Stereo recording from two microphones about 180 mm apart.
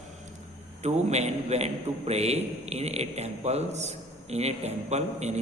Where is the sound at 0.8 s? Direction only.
40° right (ahead or behind).